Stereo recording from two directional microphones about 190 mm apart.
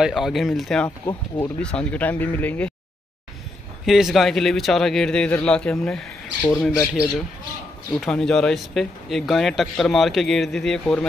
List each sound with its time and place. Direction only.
0.0 s speech: centre (ahead or behind)
0.8 s speech: 20° left (ahead or behind)
1.6 s speech: 5° left (ahead or behind)
3.8 s speech: centre (ahead or behind)